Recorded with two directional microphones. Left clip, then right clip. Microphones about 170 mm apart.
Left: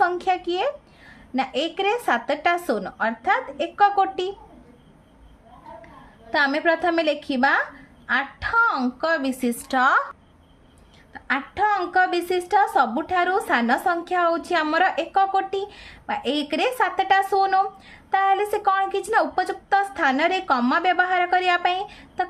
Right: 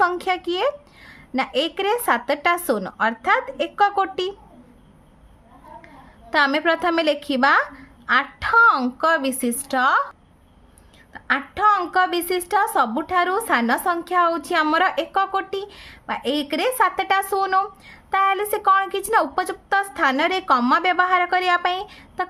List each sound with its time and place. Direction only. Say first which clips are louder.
0.0 s a woman's voice: right 1 dB; 30° right (ahead or behind)
6.3 s a woman's voice: right 2 dB; 35° right (ahead or behind); by 10.0 s 10° right (ahead or behind)
11.1 s a woman's voice: right 3 dB; 30° right (ahead or behind)